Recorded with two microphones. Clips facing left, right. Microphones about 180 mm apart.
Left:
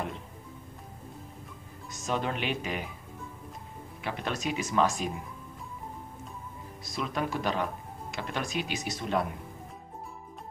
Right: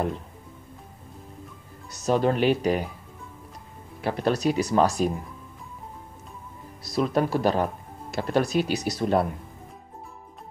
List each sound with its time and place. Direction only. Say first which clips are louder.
1.9 s speech: right 9 dB; 40° right (ahead or behind)
4.0 s speech: right 9 dB; 40° right (ahead or behind)
6.8 s speech: right 9 dB; 40° right (ahead or behind)